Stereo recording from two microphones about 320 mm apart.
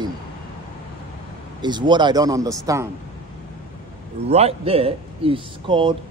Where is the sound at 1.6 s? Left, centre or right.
Centre.